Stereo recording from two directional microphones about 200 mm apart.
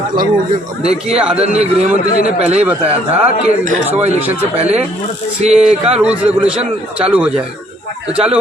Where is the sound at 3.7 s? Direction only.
35° right (ahead or behind).